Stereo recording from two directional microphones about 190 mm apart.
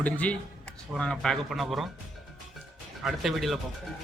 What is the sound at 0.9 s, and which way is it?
Speech, 5° left (ahead or behind).